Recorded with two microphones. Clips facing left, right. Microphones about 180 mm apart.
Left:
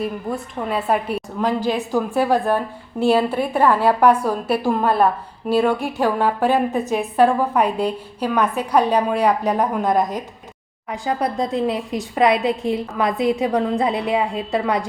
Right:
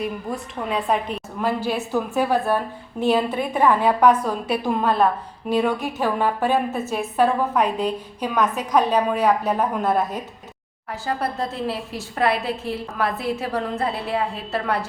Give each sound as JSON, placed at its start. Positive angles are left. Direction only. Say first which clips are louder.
{"t": 0.0, "sound": "a woman's voice", "louder": "left 3 dB", "side_deg": 0}
{"t": 1.4, "sound": "a woman's voice", "louder": "left 3 dB", "side_deg": -5}
{"t": 1.7, "sound": "a woman's voice", "louder": "left 2 dB", "side_deg": 15}